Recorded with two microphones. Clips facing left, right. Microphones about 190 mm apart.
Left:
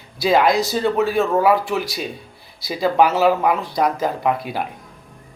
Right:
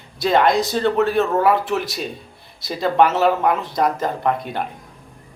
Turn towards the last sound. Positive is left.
turn(degrees=5)  # may be behind; listen again after turning